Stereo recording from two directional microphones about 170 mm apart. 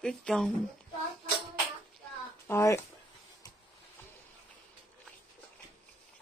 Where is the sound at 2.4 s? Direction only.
15° left (ahead or behind).